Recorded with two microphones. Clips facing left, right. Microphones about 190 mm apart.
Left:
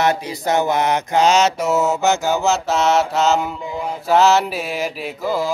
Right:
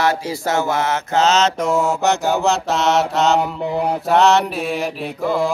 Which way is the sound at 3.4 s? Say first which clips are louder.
Right 5 dB; 65° right (ahead or behind).